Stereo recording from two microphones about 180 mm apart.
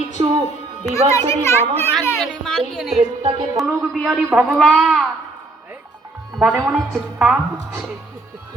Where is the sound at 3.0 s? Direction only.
30° right (ahead or behind).